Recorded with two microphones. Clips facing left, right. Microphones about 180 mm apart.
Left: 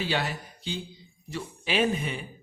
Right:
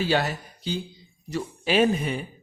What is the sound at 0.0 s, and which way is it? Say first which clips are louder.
A man's voice: right 5 dB; 40° right (ahead or behind).